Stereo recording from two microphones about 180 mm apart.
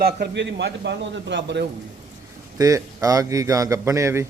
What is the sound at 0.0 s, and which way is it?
A man's voice, 65° right (ahead or behind).